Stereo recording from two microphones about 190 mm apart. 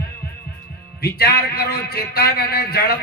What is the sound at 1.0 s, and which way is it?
A man's voice, 55° left (ahead or behind).